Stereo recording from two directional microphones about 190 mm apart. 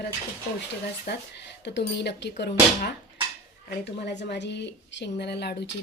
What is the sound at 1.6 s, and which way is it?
A woman's voice, 65° left (ahead or behind).